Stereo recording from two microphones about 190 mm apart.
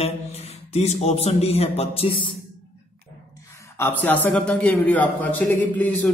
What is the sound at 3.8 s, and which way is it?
A man's voice, 10° left (ahead or behind).